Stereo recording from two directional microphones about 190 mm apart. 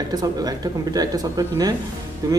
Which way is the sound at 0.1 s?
20° right (ahead or behind).